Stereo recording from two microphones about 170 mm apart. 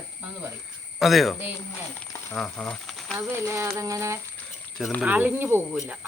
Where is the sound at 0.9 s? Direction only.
Centre (ahead or behind).